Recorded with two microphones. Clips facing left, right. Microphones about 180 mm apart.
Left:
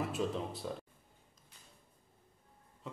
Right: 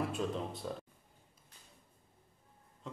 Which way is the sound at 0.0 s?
Centre (ahead or behind).